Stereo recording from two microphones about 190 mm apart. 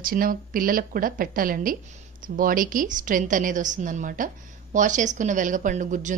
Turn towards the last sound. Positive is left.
turn(degrees=-40)  # may be behind; listen again after turning